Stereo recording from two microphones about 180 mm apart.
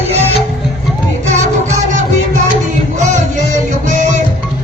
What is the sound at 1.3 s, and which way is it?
Music, 40° right (ahead or behind).